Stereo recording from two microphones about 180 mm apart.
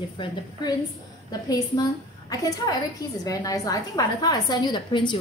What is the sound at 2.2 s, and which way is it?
A woman's voice, 20° left (ahead or behind).